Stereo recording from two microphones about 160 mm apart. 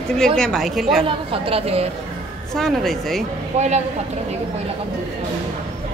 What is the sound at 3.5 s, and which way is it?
Speech, 45° right (ahead or behind).